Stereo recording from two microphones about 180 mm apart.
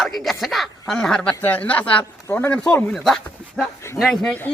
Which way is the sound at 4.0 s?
Centre (ahead or behind).